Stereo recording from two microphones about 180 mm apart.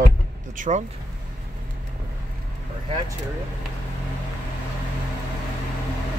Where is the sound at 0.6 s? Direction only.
40° right (ahead or behind).